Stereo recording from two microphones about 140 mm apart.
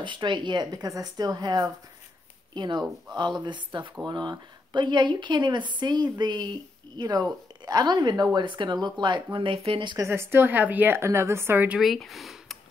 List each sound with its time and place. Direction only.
0.0 s a woman's voice: 35° right (ahead or behind)
9.9 s speech: 20° right (ahead or behind)
11.8 s speech: centre (ahead or behind)